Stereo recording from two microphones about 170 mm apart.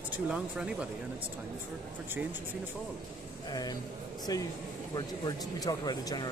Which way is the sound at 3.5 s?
25° left (ahead or behind).